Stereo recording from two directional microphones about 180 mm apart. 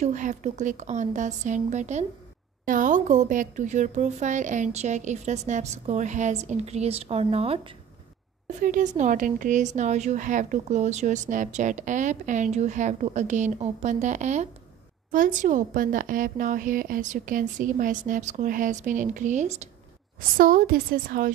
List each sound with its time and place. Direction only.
0.0 s a woman's voice: 40° right (ahead or behind)
8.6 s a woman's voice: 45° right (ahead or behind)
20.2 s a woman's voice: 50° right (ahead or behind)